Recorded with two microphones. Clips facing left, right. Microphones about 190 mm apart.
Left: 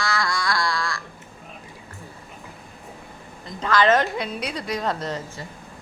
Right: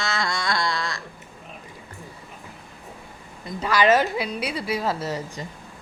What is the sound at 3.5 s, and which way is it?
A woman's voice, 10° right (ahead or behind).